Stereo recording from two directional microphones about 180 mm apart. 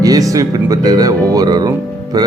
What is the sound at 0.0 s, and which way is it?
Speech, 20° right (ahead or behind).